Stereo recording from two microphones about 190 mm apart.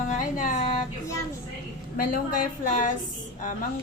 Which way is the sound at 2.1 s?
45° left (ahead or behind).